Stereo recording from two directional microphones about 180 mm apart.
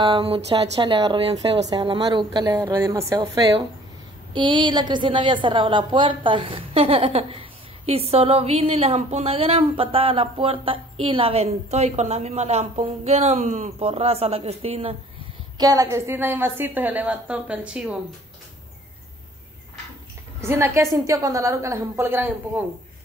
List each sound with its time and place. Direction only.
0.0 s a woman's voice: 30° right (ahead or behind)
15.5 s a woman's voice: 20° right (ahead or behind); by 17.9 s 5° right (ahead or behind)
20.3 s a woman's voice: 15° right (ahead or behind)